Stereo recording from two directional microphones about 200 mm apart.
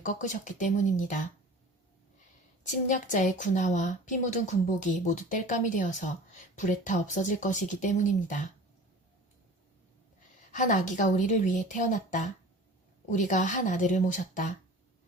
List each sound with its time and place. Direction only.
0.0 s a woman's voice: 40° left (ahead or behind)
2.6 s a woman's voice: 40° left (ahead or behind)
10.5 s a woman's voice: 40° left (ahead or behind)